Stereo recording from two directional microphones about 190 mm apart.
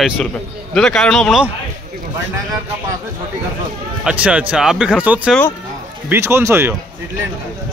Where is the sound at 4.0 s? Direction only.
5° right (ahead or behind).